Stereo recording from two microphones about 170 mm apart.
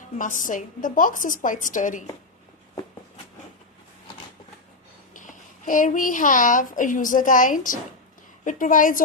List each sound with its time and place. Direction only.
0.2 s a woman's voice: 50° left (ahead or behind)
5.1 s a child's voice: 50° left (ahead or behind)